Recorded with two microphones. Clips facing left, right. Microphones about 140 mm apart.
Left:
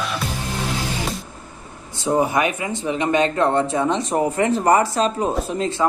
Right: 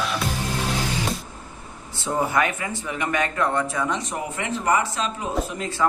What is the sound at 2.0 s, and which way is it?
Speech, 20° left (ahead or behind).